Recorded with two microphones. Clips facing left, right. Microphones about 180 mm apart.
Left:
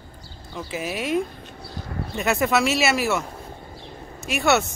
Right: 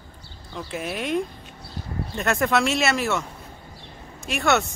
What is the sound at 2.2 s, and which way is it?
Speech, 5° left (ahead or behind).